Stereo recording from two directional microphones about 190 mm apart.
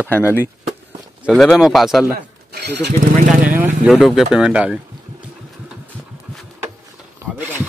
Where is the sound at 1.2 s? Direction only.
Centre (ahead or behind).